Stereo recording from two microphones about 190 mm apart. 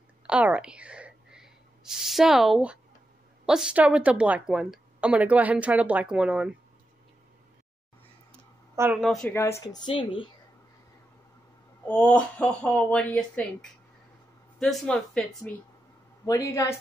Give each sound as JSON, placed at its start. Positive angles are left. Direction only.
{"t": 0.3, "sound": "spray", "side_deg": -5}
{"t": 3.4, "sound": "speech", "side_deg": -5}
{"t": 8.7, "sound": "a woman's voice", "side_deg": -10}
{"t": 9.0, "sound": "speech", "side_deg": 0}
{"t": 9.3, "sound": "speech", "side_deg": 15}
{"t": 11.9, "sound": "speech", "side_deg": 5}
{"t": 16.3, "sound": "speech", "side_deg": 15}